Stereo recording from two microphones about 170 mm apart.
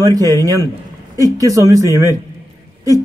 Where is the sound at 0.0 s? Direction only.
20° right (ahead or behind).